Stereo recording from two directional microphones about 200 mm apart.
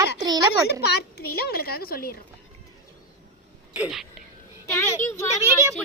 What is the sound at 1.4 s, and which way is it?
Speech, 50° left (ahead or behind).